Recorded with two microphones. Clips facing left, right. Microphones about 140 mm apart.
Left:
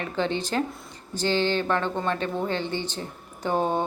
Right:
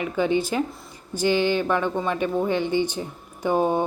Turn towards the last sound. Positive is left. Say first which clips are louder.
# right 3 dB
turn(degrees=-10)  # may be behind; listen again after turning